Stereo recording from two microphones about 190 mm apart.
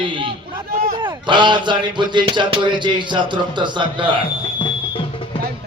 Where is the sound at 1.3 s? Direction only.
25° right (ahead or behind).